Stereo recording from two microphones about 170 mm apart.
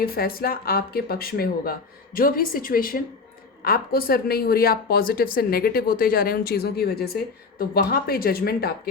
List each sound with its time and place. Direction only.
0.0 s a woman's voice: 60° left (ahead or behind)